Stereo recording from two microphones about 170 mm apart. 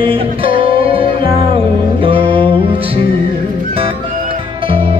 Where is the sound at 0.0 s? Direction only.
30° right (ahead or behind).